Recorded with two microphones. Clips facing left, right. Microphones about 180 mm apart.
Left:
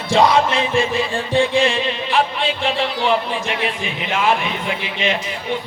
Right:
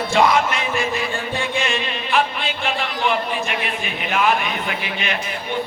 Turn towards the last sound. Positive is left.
turn(degrees=25)  # may be behind; listen again after turning